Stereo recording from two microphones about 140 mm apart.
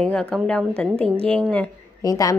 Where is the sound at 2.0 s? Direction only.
25° left (ahead or behind).